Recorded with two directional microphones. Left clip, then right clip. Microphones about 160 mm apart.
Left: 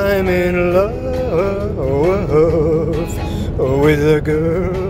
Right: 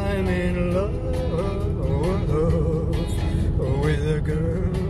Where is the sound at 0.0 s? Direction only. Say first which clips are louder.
Left 11 dB; 50° left (ahead or behind).